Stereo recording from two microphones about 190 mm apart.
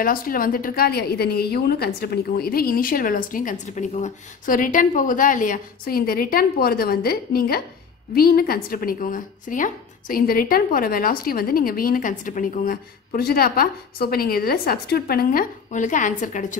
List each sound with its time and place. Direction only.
0.0 s a woman's voice: 50° left (ahead or behind)